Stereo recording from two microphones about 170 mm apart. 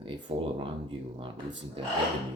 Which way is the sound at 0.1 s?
30° right (ahead or behind).